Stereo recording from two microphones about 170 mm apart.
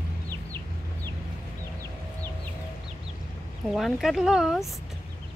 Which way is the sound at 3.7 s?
Centre (ahead or behind).